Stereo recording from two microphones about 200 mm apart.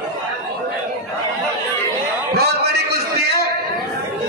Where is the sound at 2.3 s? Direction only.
55° right (ahead or behind).